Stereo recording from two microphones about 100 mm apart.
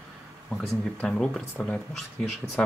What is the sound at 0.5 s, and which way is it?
Speech, 10° left (ahead or behind).